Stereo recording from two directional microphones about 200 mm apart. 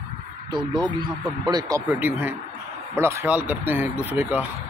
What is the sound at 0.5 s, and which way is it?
Speech, 20° right (ahead or behind).